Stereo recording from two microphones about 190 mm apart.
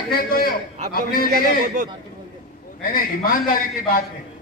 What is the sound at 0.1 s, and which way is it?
A man's voice, 50° left (ahead or behind).